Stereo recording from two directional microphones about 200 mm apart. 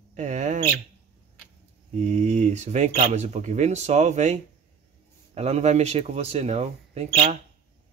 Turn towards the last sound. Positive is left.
turn(degrees=-30)  # may be behind; listen again after turning